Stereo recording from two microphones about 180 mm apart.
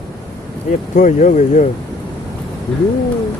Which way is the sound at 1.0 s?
45° left (ahead or behind).